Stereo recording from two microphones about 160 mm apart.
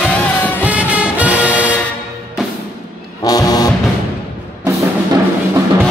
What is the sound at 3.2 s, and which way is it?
Music, 25° left (ahead or behind).